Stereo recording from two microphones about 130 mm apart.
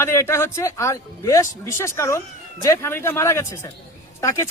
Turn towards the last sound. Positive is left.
turn(degrees=25)  # may be behind; listen again after turning